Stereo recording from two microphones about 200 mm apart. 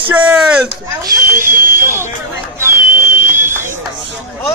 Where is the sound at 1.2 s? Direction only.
45° right (ahead or behind).